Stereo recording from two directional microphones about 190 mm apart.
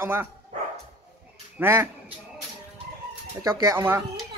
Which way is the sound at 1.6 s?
10° right (ahead or behind).